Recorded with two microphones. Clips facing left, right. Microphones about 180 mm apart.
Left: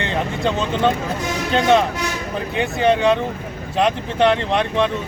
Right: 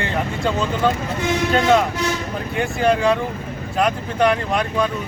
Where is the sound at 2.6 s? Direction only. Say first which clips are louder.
Left 1 dB; 20° left (ahead or behind).